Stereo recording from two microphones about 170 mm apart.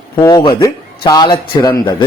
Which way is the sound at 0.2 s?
20° left (ahead or behind).